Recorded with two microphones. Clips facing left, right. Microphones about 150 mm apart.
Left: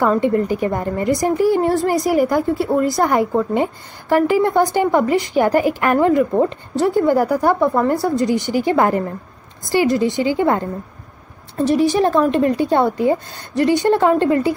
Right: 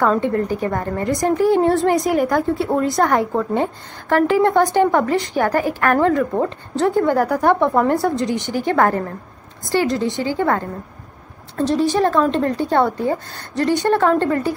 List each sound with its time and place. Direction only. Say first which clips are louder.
0.0 s a woman's voice: left 2 dB; 10° left (ahead or behind)